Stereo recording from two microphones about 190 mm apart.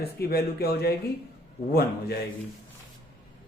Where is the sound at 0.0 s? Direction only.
55° left (ahead or behind).